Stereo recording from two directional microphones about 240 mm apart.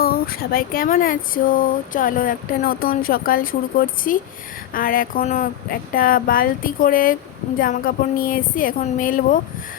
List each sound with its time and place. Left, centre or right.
0.0 s speech: left